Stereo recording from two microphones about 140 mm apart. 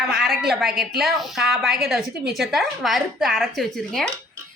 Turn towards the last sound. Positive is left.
turn(degrees=0)  # may be behind; listen again after turning